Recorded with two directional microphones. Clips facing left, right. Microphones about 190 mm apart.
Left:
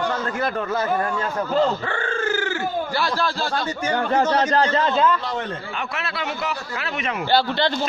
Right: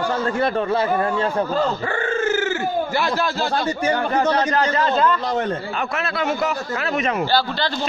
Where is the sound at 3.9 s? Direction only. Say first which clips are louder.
Left 1 dB; 30° left (ahead or behind).